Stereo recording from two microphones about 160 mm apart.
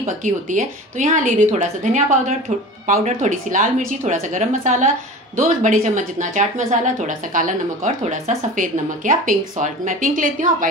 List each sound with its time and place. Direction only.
0.0 s a woman's voice: 55° right (ahead or behind)